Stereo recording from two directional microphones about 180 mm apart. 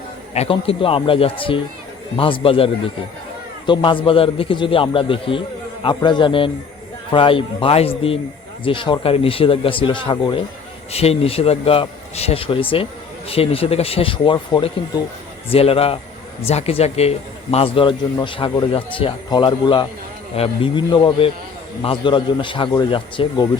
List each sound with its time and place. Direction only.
0.3 s a man's voice: 30° left (ahead or behind)